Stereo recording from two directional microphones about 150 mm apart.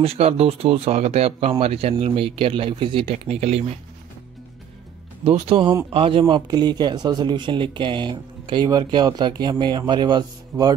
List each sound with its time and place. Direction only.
0.0 s speech: 40° right (ahead or behind)
5.2 s speech: 40° right (ahead or behind); by 10.7 s 25° right (ahead or behind)